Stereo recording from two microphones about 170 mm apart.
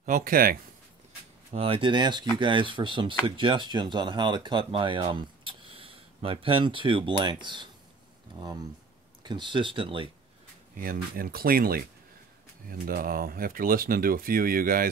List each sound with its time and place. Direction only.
0.0 s speech: 55° right (ahead or behind)
1.5 s speech: 35° right (ahead or behind)
9.2 s speech: 25° right (ahead or behind)
10.8 s speech: 60° right (ahead or behind)